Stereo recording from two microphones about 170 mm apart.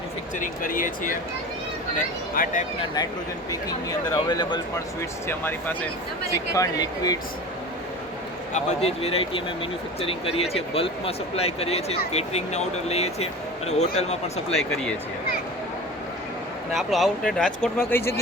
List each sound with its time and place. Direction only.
0.3 s speech: 50° left (ahead or behind)
2.3 s speech: 50° left (ahead or behind)
3.5 s speech: 20° left (ahead or behind)
5.4 s speech: 10° left (ahead or behind)
8.5 s speech: 35° left (ahead or behind)
14.5 s speech: 5° left (ahead or behind)
16.7 s speech: centre (ahead or behind)
17.8 s speech: 15° left (ahead or behind)